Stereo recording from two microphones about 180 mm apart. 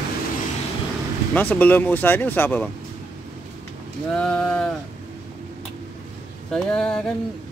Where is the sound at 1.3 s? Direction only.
10° left (ahead or behind).